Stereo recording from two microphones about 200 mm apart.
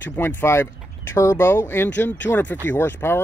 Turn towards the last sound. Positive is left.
turn(degrees=10)  # may be behind; listen again after turning